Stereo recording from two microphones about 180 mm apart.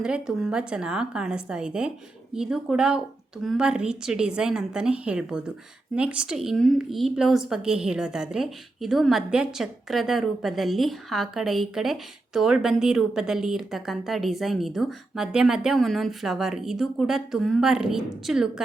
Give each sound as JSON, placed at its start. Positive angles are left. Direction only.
{"t": 0.0, "sound": "a woman's voice", "side_deg": -5}